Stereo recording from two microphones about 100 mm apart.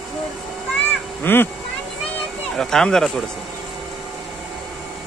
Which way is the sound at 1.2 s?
20° left (ahead or behind).